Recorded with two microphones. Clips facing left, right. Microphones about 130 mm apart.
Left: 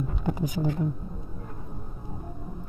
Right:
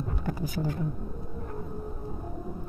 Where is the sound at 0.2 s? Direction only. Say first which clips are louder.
Left 4 dB; 20° left (ahead or behind).